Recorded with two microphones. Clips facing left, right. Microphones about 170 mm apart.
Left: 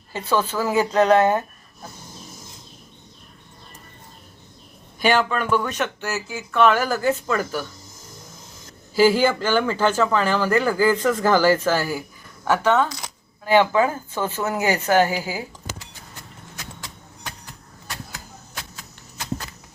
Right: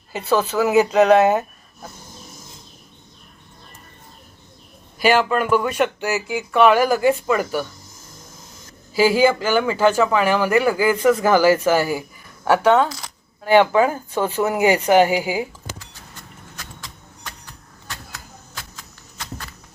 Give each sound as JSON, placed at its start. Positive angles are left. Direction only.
{"t": 0.6, "sound": "speech", "side_deg": -20}
{"t": 0.9, "sound": "speech", "side_deg": -10}
{"t": 4.9, "sound": "speech", "side_deg": -5}
{"t": 9.0, "sound": "speech", "side_deg": -10}